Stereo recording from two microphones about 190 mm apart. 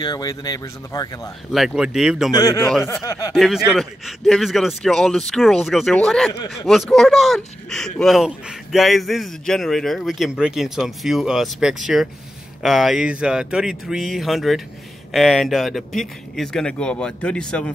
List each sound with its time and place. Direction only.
0.0 s speech: 20° left (ahead or behind)
1.5 s a man's voice: centre (ahead or behind)
2.3 s speech: 20° left (ahead or behind)
3.3 s a man's voice: centre (ahead or behind)